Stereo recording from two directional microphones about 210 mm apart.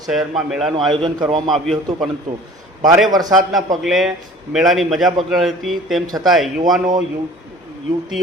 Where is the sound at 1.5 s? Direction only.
Centre (ahead or behind).